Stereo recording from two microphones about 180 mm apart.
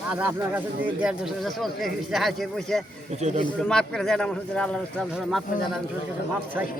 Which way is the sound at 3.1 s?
40° right (ahead or behind).